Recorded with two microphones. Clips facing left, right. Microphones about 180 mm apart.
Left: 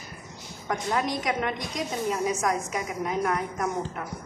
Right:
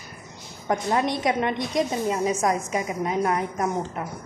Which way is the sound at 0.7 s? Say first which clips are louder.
Right 4 dB; 30° right (ahead or behind).